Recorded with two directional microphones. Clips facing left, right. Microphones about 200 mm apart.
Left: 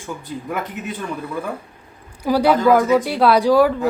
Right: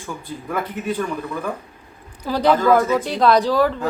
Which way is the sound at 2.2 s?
10° left (ahead or behind).